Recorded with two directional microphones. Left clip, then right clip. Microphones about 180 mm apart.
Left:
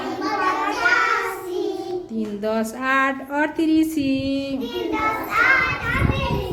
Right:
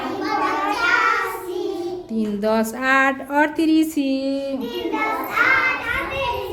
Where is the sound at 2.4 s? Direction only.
25° right (ahead or behind).